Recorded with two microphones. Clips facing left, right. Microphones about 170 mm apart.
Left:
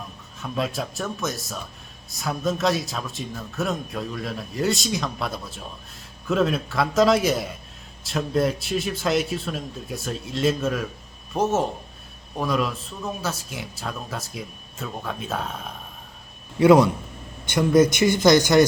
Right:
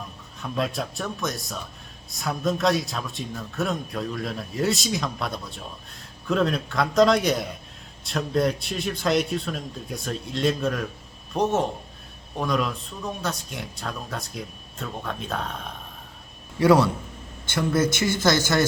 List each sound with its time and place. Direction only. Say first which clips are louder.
0.3 s speech: even; centre (ahead or behind)
16.6 s a man's voice: left 3 dB; 20° left (ahead or behind)